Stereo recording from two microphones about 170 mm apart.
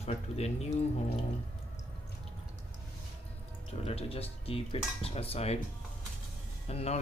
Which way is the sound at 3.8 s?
35° left (ahead or behind).